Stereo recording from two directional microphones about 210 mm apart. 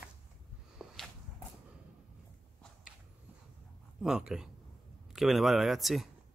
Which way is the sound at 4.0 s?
5° right (ahead or behind).